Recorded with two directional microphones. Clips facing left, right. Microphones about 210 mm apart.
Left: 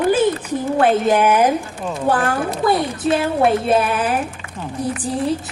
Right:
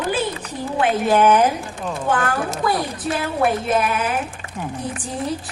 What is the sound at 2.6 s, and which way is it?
A woman's voice, 25° left (ahead or behind).